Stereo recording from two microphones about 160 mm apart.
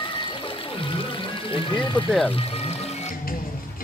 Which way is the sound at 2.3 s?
40° left (ahead or behind).